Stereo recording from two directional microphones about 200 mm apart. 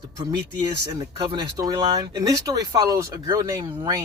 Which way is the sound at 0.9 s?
20° right (ahead or behind).